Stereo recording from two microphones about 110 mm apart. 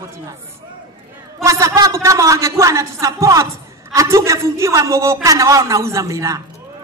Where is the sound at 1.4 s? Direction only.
30° right (ahead or behind).